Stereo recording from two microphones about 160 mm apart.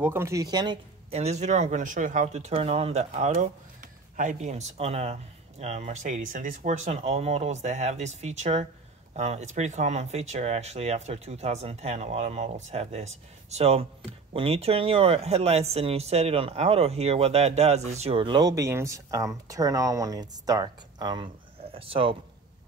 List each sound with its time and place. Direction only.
0.0 s speech: 15° right (ahead or behind)
1.1 s speech: 45° right (ahead or behind)